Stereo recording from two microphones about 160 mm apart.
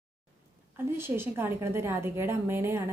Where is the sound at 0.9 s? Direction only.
15° right (ahead or behind).